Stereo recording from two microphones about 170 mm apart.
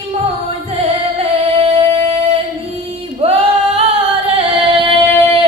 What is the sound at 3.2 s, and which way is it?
Singing, 35° right (ahead or behind).